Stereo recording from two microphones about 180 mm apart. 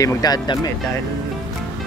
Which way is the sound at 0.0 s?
20° left (ahead or behind).